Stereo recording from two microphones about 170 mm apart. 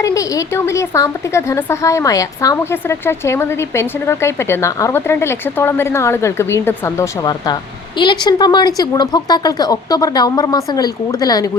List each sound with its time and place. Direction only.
0.0 s a woman's voice: 20° left (ahead or behind)